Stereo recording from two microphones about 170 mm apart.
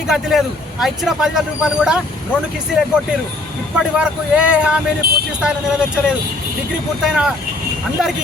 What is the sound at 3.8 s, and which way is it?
Speech, 5° right (ahead or behind).